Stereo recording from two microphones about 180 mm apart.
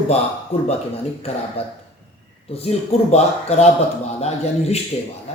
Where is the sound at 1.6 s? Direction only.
35° left (ahead or behind).